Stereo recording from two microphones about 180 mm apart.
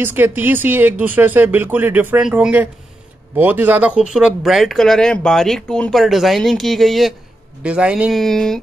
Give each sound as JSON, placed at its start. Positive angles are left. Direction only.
{"t": 0.0, "sound": "speech", "side_deg": -10}